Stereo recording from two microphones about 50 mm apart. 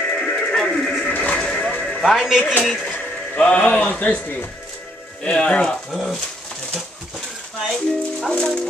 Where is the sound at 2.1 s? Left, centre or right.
Centre.